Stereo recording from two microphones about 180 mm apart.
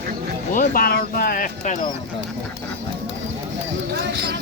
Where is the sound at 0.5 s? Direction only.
55° left (ahead or behind).